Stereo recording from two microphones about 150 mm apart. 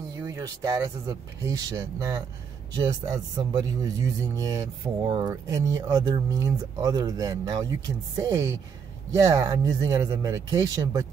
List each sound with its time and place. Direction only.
0.3 s speech: 25° right (ahead or behind)